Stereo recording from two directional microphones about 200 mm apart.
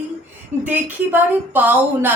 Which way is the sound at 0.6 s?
10° right (ahead or behind).